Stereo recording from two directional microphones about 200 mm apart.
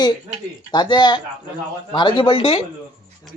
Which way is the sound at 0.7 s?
20° left (ahead or behind).